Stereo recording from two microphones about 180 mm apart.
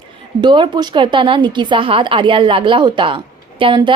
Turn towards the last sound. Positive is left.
turn(degrees=-25)  # may be behind; listen again after turning